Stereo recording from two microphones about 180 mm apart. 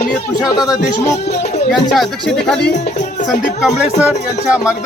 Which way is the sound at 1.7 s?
Centre (ahead or behind).